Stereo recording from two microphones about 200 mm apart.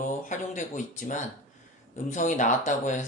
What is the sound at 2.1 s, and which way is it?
Speech, 40° left (ahead or behind).